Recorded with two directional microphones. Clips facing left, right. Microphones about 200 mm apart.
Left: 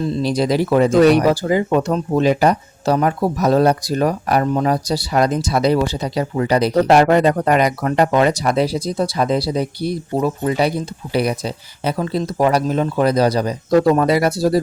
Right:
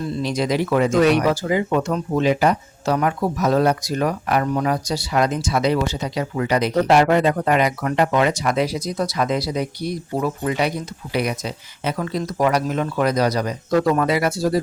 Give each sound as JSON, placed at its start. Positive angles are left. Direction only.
{"t": 0.1, "sound": "speech", "side_deg": 35}